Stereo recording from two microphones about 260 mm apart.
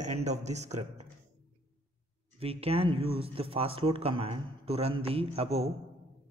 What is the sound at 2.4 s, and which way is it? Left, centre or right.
Speech, right.